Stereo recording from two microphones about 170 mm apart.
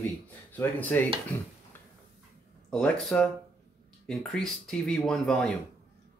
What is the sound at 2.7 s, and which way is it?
Speech, 5° left (ahead or behind).